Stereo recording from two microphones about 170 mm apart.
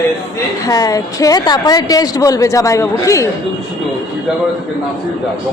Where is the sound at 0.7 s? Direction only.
20° left (ahead or behind).